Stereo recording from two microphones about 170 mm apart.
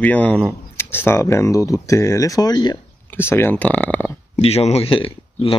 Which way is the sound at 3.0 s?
15° left (ahead or behind).